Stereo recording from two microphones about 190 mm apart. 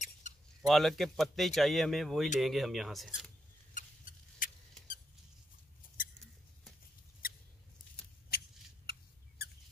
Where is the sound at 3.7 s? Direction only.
45° left (ahead or behind).